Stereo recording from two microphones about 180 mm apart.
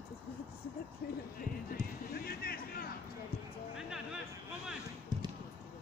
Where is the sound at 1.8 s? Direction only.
55° left (ahead or behind).